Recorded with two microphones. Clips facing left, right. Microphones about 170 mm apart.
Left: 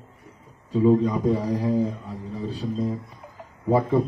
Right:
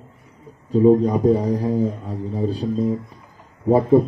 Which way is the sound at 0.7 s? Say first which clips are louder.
Right 5 dB; 40° right (ahead or behind).